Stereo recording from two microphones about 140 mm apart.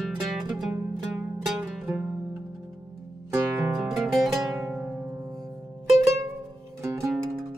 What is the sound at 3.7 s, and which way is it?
Music, centre (ahead or behind).